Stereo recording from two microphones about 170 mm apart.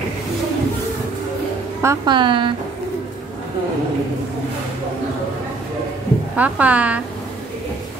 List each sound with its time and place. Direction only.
1.8 s a woman's voice: 15° right (ahead or behind)
2.1 s a woman's voice: 30° right (ahead or behind)
6.3 s a woman's voice: 10° right (ahead or behind)